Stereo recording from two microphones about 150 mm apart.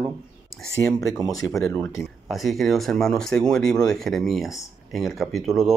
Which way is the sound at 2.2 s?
Centre (ahead or behind).